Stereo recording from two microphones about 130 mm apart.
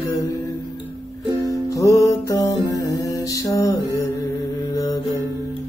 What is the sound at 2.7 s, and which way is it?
Mantra, 25° left (ahead or behind).